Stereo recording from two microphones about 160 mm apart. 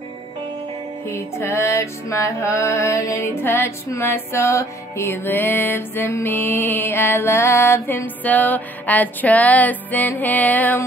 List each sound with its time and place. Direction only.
1.0 s music: 15° left (ahead or behind)